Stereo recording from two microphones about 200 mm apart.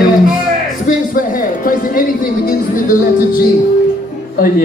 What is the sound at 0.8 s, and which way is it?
Music, 40° left (ahead or behind).